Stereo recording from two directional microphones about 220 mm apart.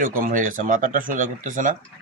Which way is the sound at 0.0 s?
40° right (ahead or behind).